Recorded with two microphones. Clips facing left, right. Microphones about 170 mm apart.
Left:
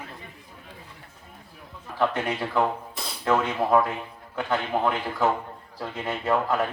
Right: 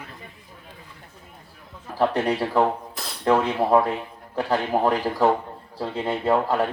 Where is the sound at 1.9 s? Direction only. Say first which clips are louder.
Right 4 dB; 35° right (ahead or behind).